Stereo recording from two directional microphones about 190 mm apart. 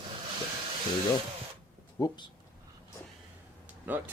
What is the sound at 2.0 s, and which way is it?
Speech, 20° left (ahead or behind).